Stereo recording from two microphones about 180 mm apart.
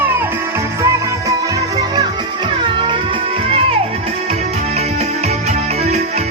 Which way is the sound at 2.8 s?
25° right (ahead or behind).